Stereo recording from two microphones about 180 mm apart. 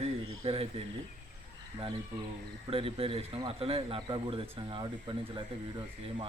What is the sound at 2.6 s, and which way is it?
A man's voice, 30° right (ahead or behind).